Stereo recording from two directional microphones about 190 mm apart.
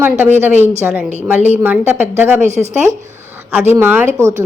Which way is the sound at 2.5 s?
35° right (ahead or behind).